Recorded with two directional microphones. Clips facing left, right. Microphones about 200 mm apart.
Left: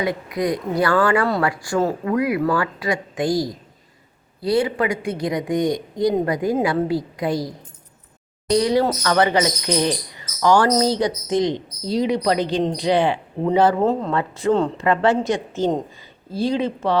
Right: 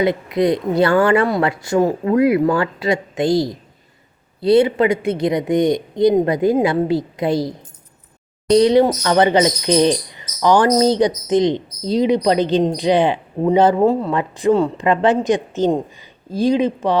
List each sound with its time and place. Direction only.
0.0 s speech: 25° right (ahead or behind)